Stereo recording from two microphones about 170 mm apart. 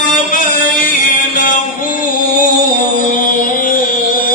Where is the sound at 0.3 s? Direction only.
50° left (ahead or behind).